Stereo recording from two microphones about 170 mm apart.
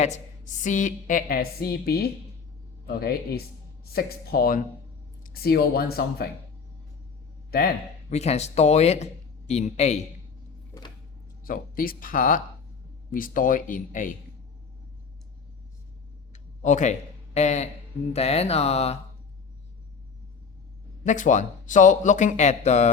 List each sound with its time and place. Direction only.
0.0 s a woman's voice: 45° left (ahead or behind); by 6.3 s 65° left (ahead or behind)
7.5 s speech: 65° left (ahead or behind)
8.1 s speech: 40° left (ahead or behind)
11.4 s a woman's voice: 55° left (ahead or behind)
16.3 s a sound: 45° left (ahead or behind)
17.3 s a woman's voice: 40° left (ahead or behind)
21.0 s a woman's voice: 50° left (ahead or behind)